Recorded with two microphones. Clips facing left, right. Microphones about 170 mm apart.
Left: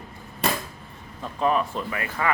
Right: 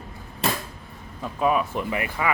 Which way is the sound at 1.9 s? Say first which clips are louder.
Right 3 dB; 20° right (ahead or behind).